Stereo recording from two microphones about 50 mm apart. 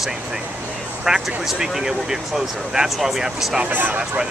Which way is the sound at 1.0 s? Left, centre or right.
Centre.